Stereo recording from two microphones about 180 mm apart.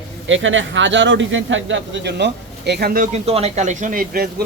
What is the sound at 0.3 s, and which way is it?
Speech, 90° right.